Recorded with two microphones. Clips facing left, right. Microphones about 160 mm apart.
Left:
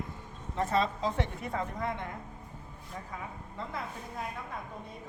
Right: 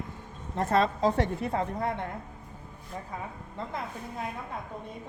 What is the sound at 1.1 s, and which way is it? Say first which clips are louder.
Speech: right 6 dB; 35° right (ahead or behind).